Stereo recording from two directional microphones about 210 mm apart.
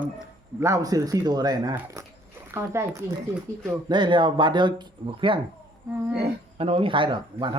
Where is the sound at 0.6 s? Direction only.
15° right (ahead or behind).